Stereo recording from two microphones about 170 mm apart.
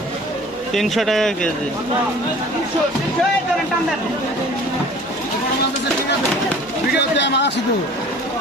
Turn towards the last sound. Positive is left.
turn(degrees=90)